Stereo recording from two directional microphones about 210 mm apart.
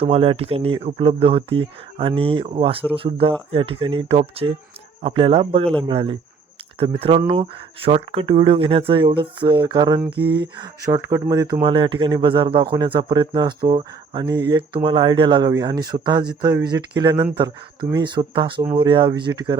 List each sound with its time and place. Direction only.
0.0 s speech: 25° right (ahead or behind)